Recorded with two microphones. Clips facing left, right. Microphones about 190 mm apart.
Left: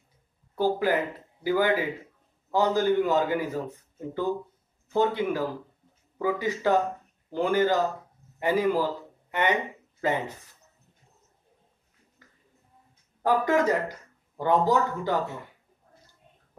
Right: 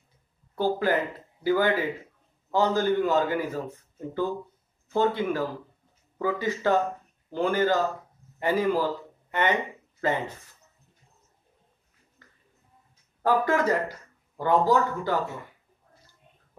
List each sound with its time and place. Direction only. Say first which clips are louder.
0.6 s a man's voice: even; 15° left (ahead or behind)
13.2 s a man's voice: even; 15° left (ahead or behind)